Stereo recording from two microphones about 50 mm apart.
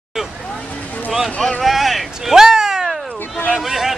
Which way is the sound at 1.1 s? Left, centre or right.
Centre.